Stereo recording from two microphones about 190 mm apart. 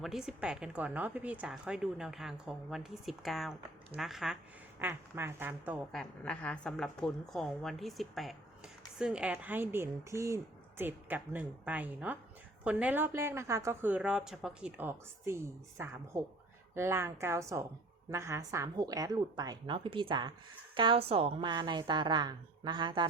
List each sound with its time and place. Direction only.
0.0 s a woman's voice: centre (ahead or behind)
4.8 s a woman's voice: 10° right (ahead or behind)
5.9 s a woman's voice: 5° left (ahead or behind); by 23.0 s 25° right (ahead or behind)